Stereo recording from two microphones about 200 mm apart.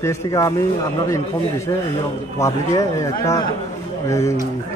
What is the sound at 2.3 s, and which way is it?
Speech, 15° left (ahead or behind).